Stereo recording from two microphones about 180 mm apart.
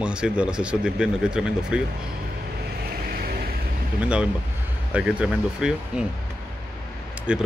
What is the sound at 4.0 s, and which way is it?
Speech, 5° right (ahead or behind).